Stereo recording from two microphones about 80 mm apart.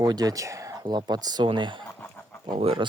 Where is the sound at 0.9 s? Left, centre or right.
Right.